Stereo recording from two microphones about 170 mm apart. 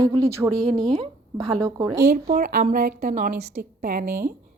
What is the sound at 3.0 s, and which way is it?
Speech, 45° right (ahead or behind).